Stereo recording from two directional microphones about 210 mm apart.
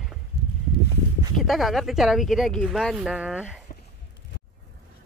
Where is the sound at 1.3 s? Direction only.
Centre (ahead or behind).